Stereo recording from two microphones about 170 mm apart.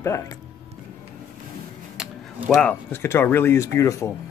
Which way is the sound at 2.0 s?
5° right (ahead or behind).